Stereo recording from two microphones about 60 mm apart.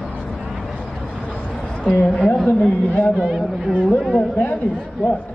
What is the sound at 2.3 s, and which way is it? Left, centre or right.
Speech, centre.